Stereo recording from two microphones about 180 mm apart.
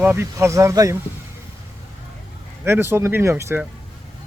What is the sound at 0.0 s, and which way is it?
Speech, 15° right (ahead or behind).